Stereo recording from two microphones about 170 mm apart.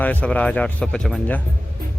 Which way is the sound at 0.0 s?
10° left (ahead or behind).